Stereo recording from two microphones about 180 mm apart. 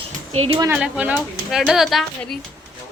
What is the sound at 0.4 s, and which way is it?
Speech, 30° right (ahead or behind).